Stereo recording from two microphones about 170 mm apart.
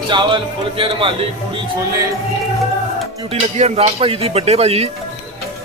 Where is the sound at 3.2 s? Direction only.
35° right (ahead or behind).